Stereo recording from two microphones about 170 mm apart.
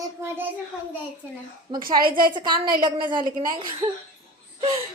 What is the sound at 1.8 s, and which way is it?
Speech, 60° right (ahead or behind).